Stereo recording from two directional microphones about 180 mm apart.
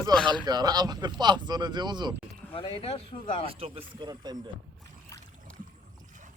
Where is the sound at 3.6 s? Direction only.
30° right (ahead or behind).